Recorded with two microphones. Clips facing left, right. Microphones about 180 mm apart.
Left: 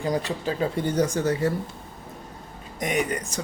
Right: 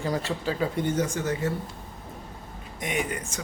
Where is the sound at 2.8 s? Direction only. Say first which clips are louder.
Left 4 dB; 40° left (ahead or behind).